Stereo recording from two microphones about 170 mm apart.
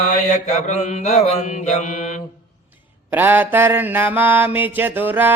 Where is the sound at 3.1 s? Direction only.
10° right (ahead or behind).